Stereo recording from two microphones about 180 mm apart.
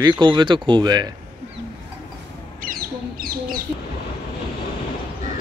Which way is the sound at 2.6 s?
55° right (ahead or behind).